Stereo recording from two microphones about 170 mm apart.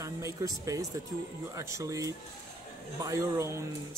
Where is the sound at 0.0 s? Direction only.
20° right (ahead or behind).